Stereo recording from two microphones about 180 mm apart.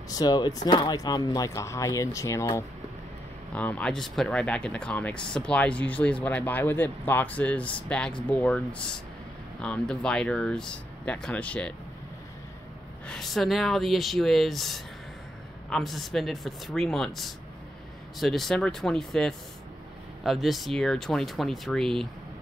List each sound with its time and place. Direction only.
0.1 s speech: 20° left (ahead or behind)
13.0 s speech: centre (ahead or behind)